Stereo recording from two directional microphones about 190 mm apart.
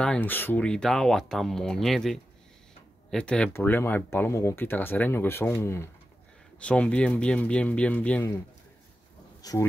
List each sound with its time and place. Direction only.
0.0 s speech: 5° left (ahead or behind)
9.4 s speech: 20° left (ahead or behind)